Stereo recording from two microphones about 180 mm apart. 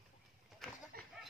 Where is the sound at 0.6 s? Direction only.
Centre (ahead or behind).